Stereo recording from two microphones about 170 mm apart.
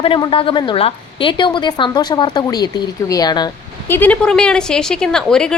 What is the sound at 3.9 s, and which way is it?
Speech, 10° left (ahead or behind).